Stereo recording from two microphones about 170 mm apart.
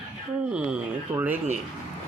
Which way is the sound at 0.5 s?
5° right (ahead or behind).